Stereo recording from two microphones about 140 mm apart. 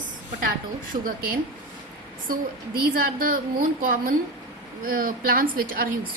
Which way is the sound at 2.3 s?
90° right.